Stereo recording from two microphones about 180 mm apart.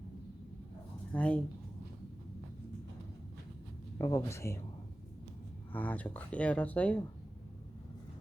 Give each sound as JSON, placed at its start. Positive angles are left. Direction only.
{"t": 1.1, "sound": "speech", "side_deg": 5}
{"t": 3.9, "sound": "speech", "side_deg": 15}
{"t": 5.7, "sound": "speech", "side_deg": 10}